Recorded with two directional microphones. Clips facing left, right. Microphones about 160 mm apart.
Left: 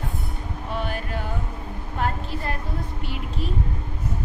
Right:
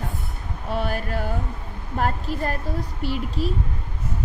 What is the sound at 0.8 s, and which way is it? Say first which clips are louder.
A woman's voice: right 4 dB; 40° right (ahead or behind).